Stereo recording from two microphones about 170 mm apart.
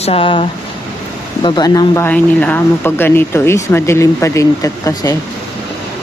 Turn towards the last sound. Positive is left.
turn(degrees=20)  # may be behind; listen again after turning